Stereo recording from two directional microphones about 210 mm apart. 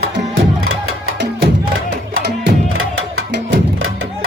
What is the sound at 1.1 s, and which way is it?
Music, 55° right (ahead or behind).